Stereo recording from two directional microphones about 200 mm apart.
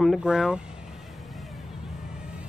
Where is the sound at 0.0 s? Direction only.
Centre (ahead or behind).